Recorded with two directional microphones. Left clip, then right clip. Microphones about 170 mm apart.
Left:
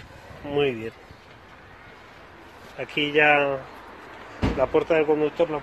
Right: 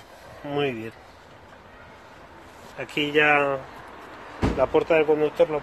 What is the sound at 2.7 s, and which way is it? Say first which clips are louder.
Speech: even; 10° left (ahead or behind).